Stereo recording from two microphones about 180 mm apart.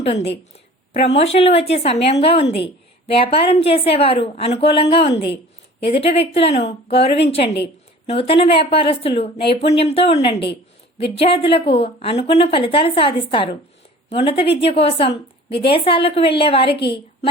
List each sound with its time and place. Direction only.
0.0 s a woman's voice: 35° left (ahead or behind)